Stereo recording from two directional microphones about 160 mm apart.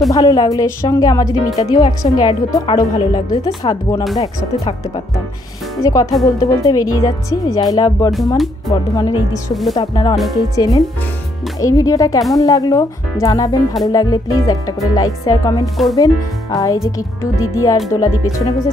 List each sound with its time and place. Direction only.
0.1 s a woman's voice: 20° left (ahead or behind)
5.8 s a woman's voice: 20° left (ahead or behind)
15.6 s speech: centre (ahead or behind)
16.5 s a woman's voice: 20° left (ahead or behind)